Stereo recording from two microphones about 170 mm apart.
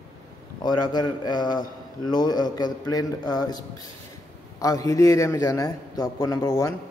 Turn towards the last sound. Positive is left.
turn(degrees=20)  # may be behind; listen again after turning